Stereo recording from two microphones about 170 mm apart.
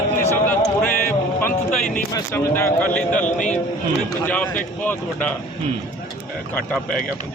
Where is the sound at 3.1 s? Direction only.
50° left (ahead or behind).